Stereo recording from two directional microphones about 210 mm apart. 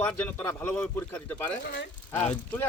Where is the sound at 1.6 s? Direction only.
55° left (ahead or behind).